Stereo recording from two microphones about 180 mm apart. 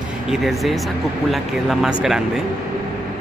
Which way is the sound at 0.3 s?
Centre (ahead or behind).